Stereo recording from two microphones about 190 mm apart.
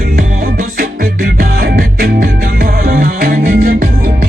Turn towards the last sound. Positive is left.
turn(degrees=-50)  # may be behind; listen again after turning